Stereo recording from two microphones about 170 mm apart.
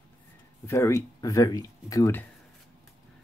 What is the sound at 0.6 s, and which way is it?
Speech, 15° left (ahead or behind).